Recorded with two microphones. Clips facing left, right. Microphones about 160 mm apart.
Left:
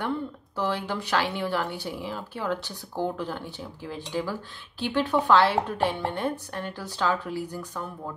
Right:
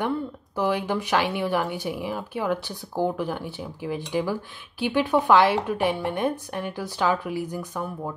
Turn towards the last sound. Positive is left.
turn(degrees=-15)  # may be behind; listen again after turning